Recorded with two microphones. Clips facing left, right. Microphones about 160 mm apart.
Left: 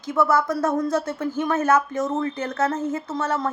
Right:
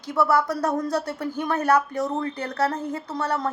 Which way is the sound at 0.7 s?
20° left (ahead or behind).